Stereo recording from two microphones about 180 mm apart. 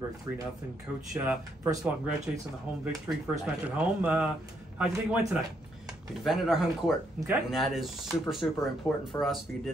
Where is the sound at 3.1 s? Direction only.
10° right (ahead or behind).